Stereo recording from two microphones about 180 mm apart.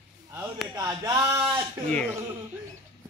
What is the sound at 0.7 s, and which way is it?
A man's voice, 20° right (ahead or behind).